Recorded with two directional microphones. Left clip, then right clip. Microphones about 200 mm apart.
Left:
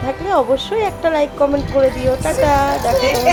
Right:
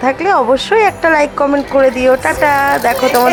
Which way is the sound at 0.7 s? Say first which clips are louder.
Right 7 dB; 10° right (ahead or behind).